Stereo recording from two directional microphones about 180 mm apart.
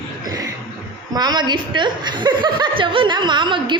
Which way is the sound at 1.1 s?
20° right (ahead or behind).